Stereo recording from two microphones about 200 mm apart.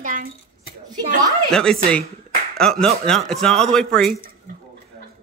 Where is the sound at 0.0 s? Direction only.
40° right (ahead or behind).